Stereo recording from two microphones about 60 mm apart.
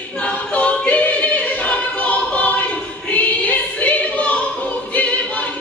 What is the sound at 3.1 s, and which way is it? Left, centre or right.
Choir, left.